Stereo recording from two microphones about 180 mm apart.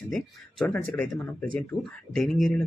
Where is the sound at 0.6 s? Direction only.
10° left (ahead or behind).